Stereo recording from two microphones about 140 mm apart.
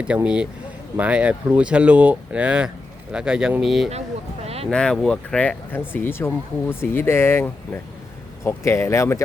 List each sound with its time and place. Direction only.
0.0 s speech: 5° right (ahead or behind)
4.4 s a sound: 45° right (ahead or behind)
4.7 s speech: 5° left (ahead or behind)